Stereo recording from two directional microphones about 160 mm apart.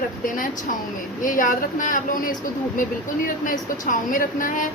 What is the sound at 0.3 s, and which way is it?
Speech, 55° left (ahead or behind).